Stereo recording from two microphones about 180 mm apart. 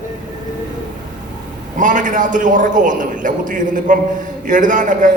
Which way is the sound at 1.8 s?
45° right (ahead or behind).